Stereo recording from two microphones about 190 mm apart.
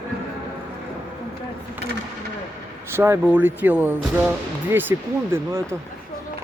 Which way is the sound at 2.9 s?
10° right (ahead or behind).